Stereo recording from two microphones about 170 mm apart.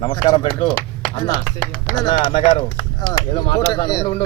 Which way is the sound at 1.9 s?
25° left (ahead or behind).